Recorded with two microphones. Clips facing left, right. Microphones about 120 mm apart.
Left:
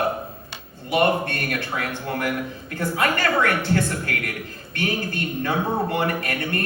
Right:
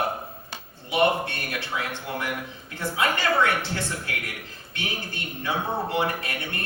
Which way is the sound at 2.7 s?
50° left (ahead or behind).